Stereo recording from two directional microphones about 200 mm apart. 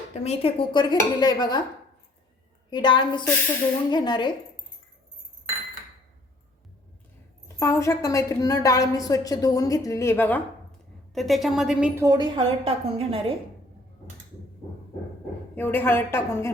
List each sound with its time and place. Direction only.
0.1 s speech: 30° left (ahead or behind)
2.6 s speech: 25° left (ahead or behind)
7.4 s a woman's voice: 15° left (ahead or behind); by 12.0 s 5° right (ahead or behind)
12.0 s a woman's voice: 20° right (ahead or behind)
15.5 s a woman's voice: 10° left (ahead or behind)